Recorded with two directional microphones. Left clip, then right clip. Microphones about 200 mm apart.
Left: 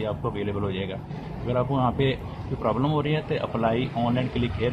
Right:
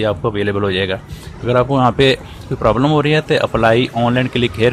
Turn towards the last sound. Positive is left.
turn(degrees=-55)  # may be behind; listen again after turning